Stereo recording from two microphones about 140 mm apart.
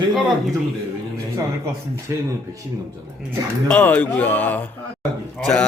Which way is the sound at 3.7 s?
10° left (ahead or behind).